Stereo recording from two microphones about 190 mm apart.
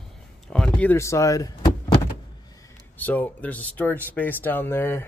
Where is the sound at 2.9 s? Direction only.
10° left (ahead or behind).